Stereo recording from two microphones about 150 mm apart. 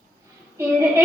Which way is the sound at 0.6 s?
15° right (ahead or behind).